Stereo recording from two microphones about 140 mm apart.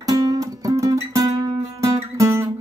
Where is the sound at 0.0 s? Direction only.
30° right (ahead or behind).